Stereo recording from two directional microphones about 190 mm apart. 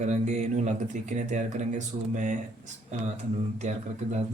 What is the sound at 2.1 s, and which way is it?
Speech, 40° right (ahead or behind).